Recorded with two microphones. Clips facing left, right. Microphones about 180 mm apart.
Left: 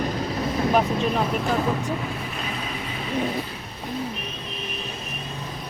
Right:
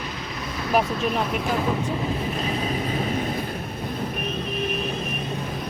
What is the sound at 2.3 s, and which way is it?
Vehicle, 40° right (ahead or behind).